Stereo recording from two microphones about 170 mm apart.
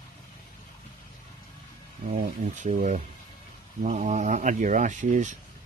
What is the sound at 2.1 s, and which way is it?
Speech, 45° right (ahead or behind).